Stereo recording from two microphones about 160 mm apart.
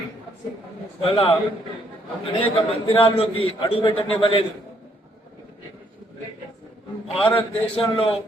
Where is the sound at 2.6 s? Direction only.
35° left (ahead or behind).